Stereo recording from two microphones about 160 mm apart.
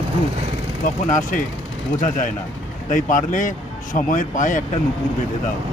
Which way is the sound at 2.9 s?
55° left (ahead or behind).